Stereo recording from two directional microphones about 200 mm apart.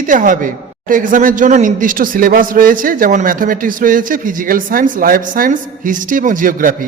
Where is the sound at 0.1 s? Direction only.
40° right (ahead or behind).